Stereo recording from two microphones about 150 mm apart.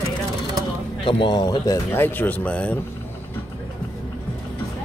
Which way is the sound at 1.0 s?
30° left (ahead or behind).